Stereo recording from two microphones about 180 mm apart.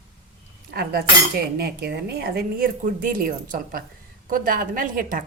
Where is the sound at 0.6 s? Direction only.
60° right (ahead or behind).